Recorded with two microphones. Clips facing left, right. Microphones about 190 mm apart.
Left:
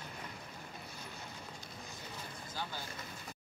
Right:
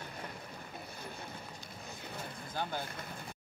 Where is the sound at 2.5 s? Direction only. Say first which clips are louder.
Right 6 dB; 55° right (ahead or behind).